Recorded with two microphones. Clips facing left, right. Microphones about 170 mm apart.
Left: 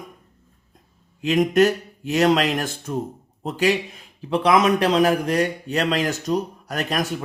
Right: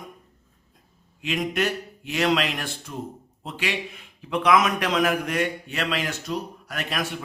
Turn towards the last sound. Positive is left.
turn(degrees=40)  # may be behind; listen again after turning